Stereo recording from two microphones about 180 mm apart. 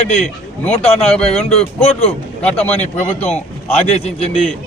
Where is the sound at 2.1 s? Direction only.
5° left (ahead or behind).